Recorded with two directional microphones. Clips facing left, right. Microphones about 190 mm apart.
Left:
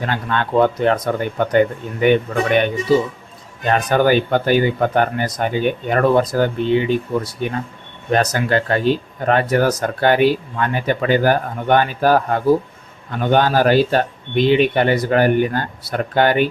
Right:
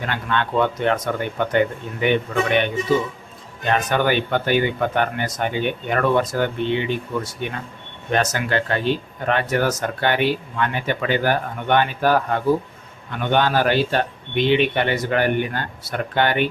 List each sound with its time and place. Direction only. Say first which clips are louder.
0.0 s speech: left 2 dB; 40° left (ahead or behind)